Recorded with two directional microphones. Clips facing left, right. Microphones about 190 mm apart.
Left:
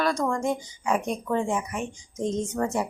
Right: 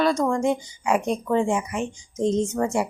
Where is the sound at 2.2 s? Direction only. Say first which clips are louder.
Right 5 dB; 30° right (ahead or behind).